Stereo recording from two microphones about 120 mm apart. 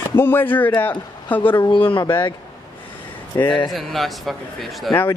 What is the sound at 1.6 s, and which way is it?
Speech, 40° left (ahead or behind).